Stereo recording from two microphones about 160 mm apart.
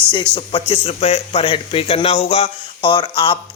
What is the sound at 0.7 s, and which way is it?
A man's voice, 40° left (ahead or behind).